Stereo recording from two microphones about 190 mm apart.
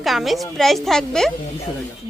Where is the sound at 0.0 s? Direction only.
Centre (ahead or behind).